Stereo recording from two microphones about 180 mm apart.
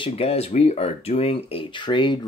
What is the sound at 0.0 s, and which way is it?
Speech, 35° left (ahead or behind).